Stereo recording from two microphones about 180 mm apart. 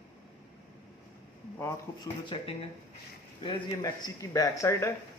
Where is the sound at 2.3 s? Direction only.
25° left (ahead or behind).